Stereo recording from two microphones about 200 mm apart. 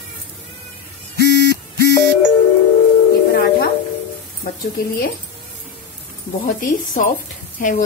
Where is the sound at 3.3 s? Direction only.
50° left (ahead or behind).